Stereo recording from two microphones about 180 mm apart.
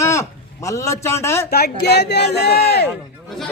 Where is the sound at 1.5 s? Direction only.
65° left (ahead or behind).